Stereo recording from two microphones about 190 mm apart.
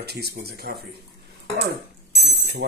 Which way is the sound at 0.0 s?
60° right (ahead or behind).